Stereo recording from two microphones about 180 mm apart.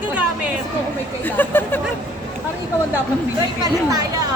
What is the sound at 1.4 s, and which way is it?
Speech, 10° left (ahead or behind).